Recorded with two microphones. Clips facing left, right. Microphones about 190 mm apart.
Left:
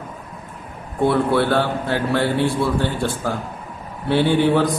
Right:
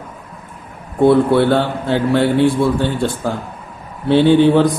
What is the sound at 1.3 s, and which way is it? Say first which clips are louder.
A man's voice: right 4 dB; 20° right (ahead or behind).